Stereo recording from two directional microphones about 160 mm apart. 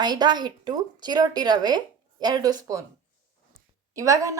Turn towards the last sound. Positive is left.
turn(degrees=-20)  # may be behind; listen again after turning